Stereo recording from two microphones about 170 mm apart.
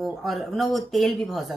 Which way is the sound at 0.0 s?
Centre (ahead or behind).